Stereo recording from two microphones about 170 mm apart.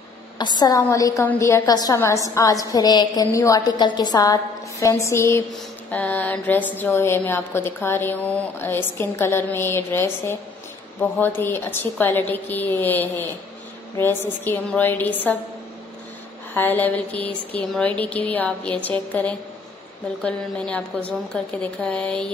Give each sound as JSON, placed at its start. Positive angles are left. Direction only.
{"t": 0.4, "sound": "a woman's voice", "side_deg": 25}
{"t": 16.5, "sound": "a woman's voice", "side_deg": 10}